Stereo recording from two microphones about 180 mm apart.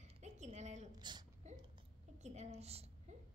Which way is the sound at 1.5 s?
40° right (ahead or behind).